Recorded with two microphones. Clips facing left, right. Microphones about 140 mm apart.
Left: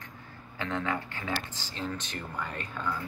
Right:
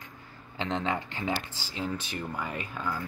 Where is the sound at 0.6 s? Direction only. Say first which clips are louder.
Right 2 dB; 25° right (ahead or behind).